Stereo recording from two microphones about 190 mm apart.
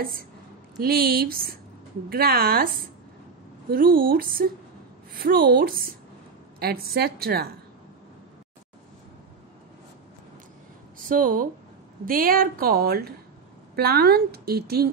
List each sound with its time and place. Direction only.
0.7 s a woman's voice: 55° right (ahead or behind)
11.1 s a woman's voice: 45° right (ahead or behind)